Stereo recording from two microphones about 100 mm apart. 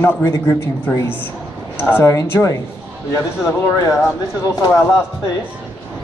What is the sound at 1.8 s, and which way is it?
Speech, 20° left (ahead or behind).